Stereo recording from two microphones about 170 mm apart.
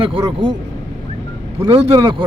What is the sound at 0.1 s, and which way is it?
Speech, 30° right (ahead or behind).